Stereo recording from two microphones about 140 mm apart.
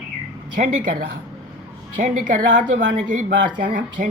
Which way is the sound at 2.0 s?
70° right (ahead or behind).